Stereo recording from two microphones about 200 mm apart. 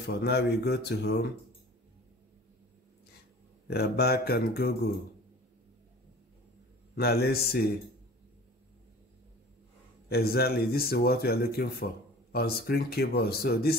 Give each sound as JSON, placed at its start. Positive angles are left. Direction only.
{"t": 0.0, "sound": "a man's voice", "side_deg": 55}
{"t": 3.6, "sound": "a man's voice", "side_deg": 55}
{"t": 7.0, "sound": "a man's voice", "side_deg": 50}
{"t": 10.0, "sound": "a man's voice", "side_deg": 50}